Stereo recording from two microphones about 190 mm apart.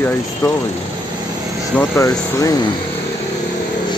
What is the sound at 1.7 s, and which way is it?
Mechanisms, 15° left (ahead or behind).